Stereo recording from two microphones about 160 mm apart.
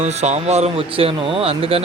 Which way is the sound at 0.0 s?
45° right (ahead or behind).